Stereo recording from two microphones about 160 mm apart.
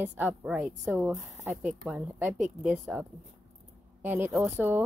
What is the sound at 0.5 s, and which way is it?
Speech, centre (ahead or behind).